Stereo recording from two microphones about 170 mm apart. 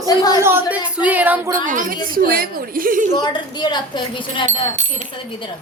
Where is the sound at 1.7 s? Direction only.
50° right (ahead or behind).